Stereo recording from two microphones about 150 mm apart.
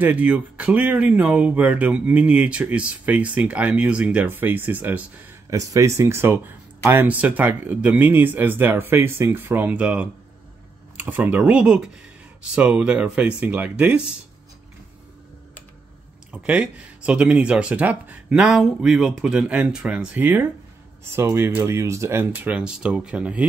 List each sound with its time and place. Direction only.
0.0 s speech: 10° right (ahead or behind)
5.5 s speech: 20° right (ahead or behind)
16.3 s speech: 10° right (ahead or behind)